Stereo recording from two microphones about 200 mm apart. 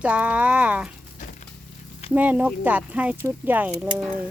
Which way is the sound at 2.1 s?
10° right (ahead or behind).